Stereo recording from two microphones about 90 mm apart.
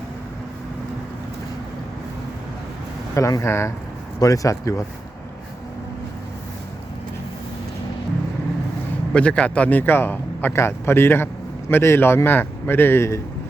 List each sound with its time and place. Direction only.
3.2 s speech: 35° left (ahead or behind)
9.1 s a man's voice: 10° left (ahead or behind); by 13.2 s 30° left (ahead or behind)